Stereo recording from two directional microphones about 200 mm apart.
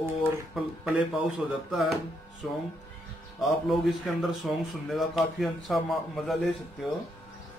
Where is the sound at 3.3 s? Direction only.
Centre (ahead or behind).